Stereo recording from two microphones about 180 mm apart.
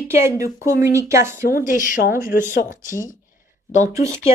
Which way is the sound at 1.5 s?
45° left (ahead or behind).